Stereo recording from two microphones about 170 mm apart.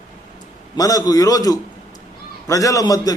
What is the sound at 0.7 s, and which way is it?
A man's voice, 20° left (ahead or behind).